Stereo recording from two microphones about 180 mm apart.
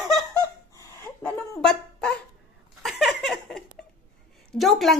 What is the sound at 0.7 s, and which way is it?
Fowl, 15° left (ahead or behind).